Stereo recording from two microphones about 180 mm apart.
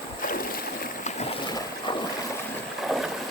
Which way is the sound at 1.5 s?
25° left (ahead or behind).